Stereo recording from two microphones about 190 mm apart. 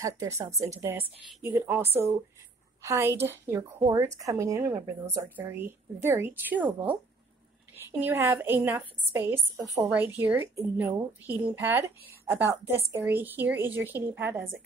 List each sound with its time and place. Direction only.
0.0 s a woman's voice: 15° right (ahead or behind)
2.8 s a woman's voice: 15° right (ahead or behind)